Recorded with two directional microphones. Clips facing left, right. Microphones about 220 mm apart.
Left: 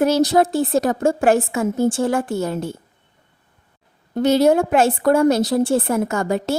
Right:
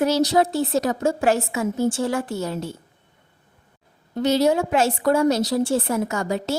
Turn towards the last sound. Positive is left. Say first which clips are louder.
# left 4 dB
turn(degrees=55)  # may be behind; listen again after turning